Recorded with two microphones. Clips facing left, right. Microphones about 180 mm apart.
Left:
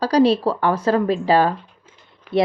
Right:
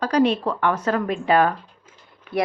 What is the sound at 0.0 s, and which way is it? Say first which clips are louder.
A woman's voice: left 4 dB; 35° left (ahead or behind).